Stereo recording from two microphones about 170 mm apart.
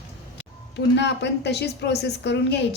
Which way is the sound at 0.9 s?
85° left.